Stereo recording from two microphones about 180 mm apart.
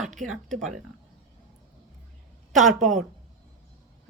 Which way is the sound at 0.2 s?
Centre (ahead or behind).